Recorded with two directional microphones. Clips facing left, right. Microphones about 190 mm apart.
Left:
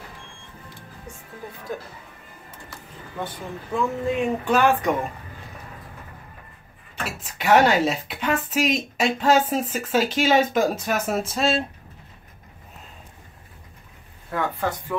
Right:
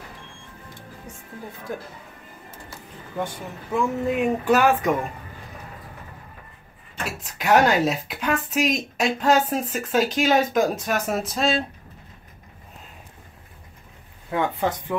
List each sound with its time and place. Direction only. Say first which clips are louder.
3.7 s speech: right 1 dB; 10° right (ahead or behind)
7.1 s speech: left 1 dB; centre (ahead or behind)
14.3 s speech: right 2 dB; 20° right (ahead or behind)